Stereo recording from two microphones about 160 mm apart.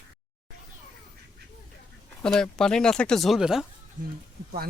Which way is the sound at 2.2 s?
5° left (ahead or behind).